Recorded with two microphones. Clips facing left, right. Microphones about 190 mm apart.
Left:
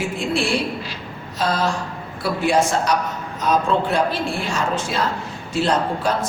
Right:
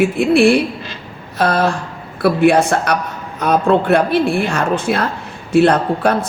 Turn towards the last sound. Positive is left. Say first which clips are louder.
# right 5 dB
turn(degrees=-60)  # may be behind; listen again after turning